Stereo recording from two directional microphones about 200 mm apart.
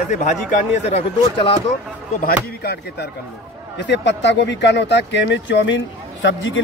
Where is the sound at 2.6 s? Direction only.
50° left (ahead or behind).